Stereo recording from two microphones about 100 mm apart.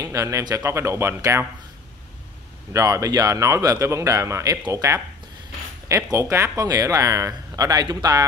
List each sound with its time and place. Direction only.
0.0 s speech: 35° right (ahead or behind)
2.7 s speech: 35° right (ahead or behind)
4.6 s speech: 40° right (ahead or behind)
5.9 s speech: 30° right (ahead or behind)